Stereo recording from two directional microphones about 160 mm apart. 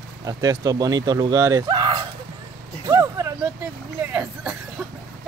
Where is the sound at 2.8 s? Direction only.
20° right (ahead or behind).